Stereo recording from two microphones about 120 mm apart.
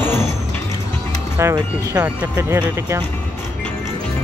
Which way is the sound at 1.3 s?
20° right (ahead or behind).